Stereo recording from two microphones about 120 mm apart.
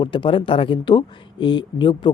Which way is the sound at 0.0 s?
45° left (ahead or behind).